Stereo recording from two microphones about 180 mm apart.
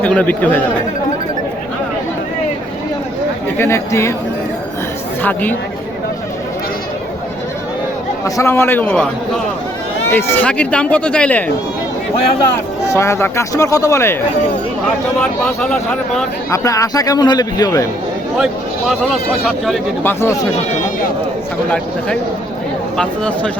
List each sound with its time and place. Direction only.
0.0 s speech: 10° left (ahead or behind)
3.6 s speech: 15° left (ahead or behind)
5.2 s speech: 10° left (ahead or behind)
8.2 s speech: 15° left (ahead or behind)
10.1 s speech: 10° left (ahead or behind)
12.8 s speech: 15° left (ahead or behind)
15.2 s speech: 5° left (ahead or behind)
16.5 s speech: 20° left (ahead or behind)
18.3 s speech: centre (ahead or behind)
20.1 s speech: 15° left (ahead or behind)
23.0 s speech: 5° left (ahead or behind)